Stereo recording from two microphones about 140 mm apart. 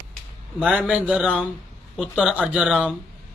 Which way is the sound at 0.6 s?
10° right (ahead or behind).